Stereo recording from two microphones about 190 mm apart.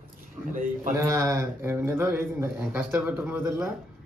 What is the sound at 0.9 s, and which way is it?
A man's voice, 15° right (ahead or behind).